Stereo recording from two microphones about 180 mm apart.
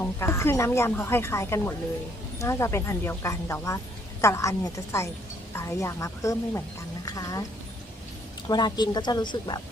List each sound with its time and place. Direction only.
0.0 s a woman's voice: 15° left (ahead or behind)
8.4 s a woman's voice: 25° left (ahead or behind)